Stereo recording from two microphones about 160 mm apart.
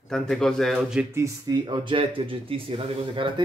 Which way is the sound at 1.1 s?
20° right (ahead or behind).